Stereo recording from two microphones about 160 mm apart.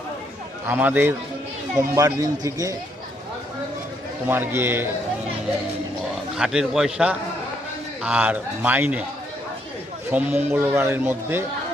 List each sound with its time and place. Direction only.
0.7 s a man's voice: 10° right (ahead or behind)
4.3 s speech: 15° right (ahead or behind)
6.3 s a man's voice: 5° right (ahead or behind)
10.1 s speech: 10° right (ahead or behind)